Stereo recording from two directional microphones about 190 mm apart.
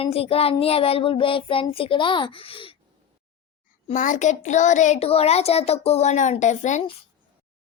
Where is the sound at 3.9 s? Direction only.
40° left (ahead or behind).